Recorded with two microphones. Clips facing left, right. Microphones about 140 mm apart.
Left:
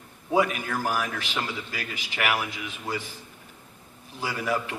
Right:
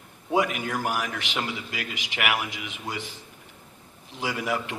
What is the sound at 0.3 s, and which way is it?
A man's voice, 15° right (ahead or behind).